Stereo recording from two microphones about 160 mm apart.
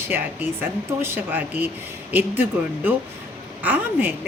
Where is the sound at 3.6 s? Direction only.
10° right (ahead or behind).